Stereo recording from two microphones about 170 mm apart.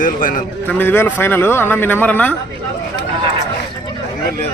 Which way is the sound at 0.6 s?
10° left (ahead or behind).